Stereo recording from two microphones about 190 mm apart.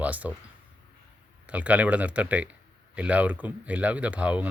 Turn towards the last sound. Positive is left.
turn(degrees=-5)  # may be behind; listen again after turning